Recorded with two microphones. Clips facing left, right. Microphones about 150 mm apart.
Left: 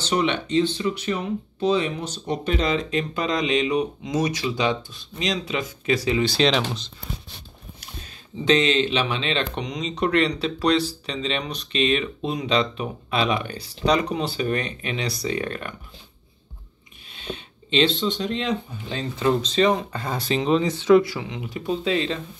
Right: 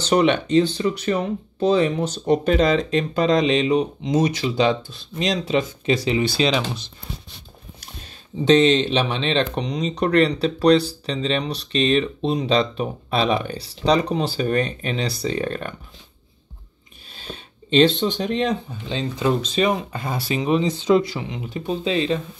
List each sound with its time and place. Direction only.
0.1 s speech: 50° right (ahead or behind); by 6.2 s 25° right (ahead or behind)
6.4 s speech: 5° right (ahead or behind)
9.1 s speech: 35° right (ahead or behind)
17.1 s a sound: 40° right (ahead or behind)
18.9 s speech: 20° right (ahead or behind)
20.7 s speech: 30° right (ahead or behind)